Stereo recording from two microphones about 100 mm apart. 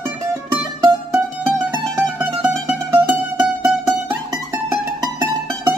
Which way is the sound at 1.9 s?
15° right (ahead or behind).